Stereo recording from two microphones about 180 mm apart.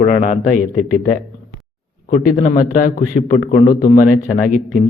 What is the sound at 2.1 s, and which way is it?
A man's voice, 45° left (ahead or behind).